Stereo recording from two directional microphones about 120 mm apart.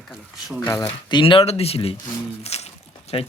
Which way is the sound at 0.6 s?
20° left (ahead or behind).